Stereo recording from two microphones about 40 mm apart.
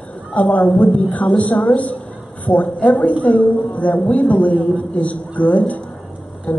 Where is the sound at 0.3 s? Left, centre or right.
Left.